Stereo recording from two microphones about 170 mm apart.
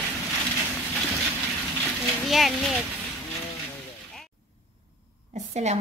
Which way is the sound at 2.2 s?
Centre (ahead or behind).